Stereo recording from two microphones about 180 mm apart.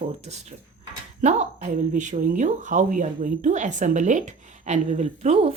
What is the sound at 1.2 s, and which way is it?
Speech, 40° right (ahead or behind).